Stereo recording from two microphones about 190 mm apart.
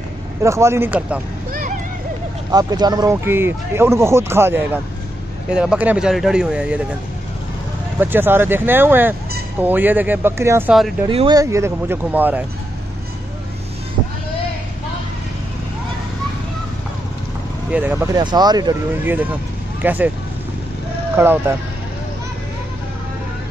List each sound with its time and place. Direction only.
0.4 s speech: 15° right (ahead or behind)
2.5 s speech: 20° right (ahead or behind); by 6.9 s 5° right (ahead or behind)
8.0 s speech: 10° right (ahead or behind)
11.1 s speech: 25° right (ahead or behind); by 12.4 s 10° right (ahead or behind)
17.6 s speech: 10° right (ahead or behind)
19.8 s speech: 10° right (ahead or behind)
21.2 s speech: 10° right (ahead or behind)